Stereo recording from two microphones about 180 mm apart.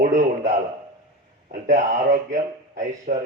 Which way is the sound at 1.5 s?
45° right (ahead or behind).